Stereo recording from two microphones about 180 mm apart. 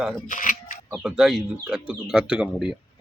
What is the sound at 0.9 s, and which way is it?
Speech, 5° right (ahead or behind).